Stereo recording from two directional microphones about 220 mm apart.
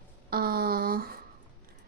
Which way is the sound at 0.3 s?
45° right (ahead or behind).